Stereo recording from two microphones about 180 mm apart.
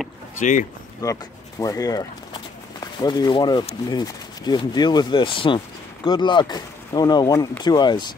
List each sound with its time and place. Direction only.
0.4 s speech: 45° left (ahead or behind)
1.0 s speech: 20° left (ahead or behind)